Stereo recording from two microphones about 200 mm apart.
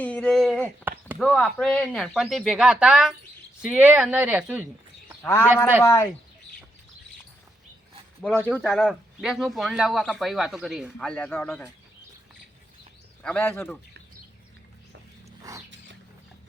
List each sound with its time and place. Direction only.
0.0 s a sound: 5° left (ahead or behind)
0.9 s chop: 10° right (ahead or behind)
1.2 s speech: 5° left (ahead or behind)
5.2 s a man's voice: 15° left (ahead or behind)
8.6 s speech: centre (ahead or behind)
13.2 s a man's voice: 5° left (ahead or behind)